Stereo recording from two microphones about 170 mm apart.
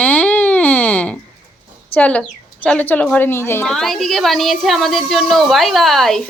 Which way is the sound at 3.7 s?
Centre (ahead or behind).